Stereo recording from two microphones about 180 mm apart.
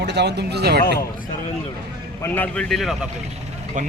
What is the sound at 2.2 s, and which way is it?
Speech, 10° left (ahead or behind).